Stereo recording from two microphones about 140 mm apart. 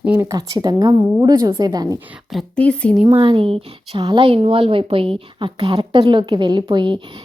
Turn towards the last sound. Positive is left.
turn(degrees=-35)  # may be behind; listen again after turning